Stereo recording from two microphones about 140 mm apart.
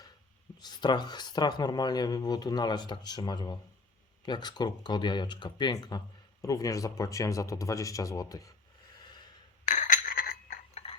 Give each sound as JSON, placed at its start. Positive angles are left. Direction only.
{"t": 0.6, "sound": "speech", "side_deg": 30}
{"t": 9.0, "sound": "snort", "side_deg": 30}
{"t": 9.6, "sound": "chink", "side_deg": 60}